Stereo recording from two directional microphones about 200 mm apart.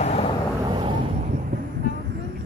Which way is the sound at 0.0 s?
30° left (ahead or behind).